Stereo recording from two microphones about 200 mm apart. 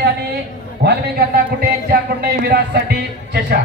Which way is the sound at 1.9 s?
50° right (ahead or behind).